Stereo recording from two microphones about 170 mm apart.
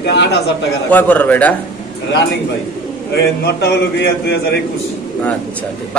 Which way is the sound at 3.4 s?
75° left (ahead or behind).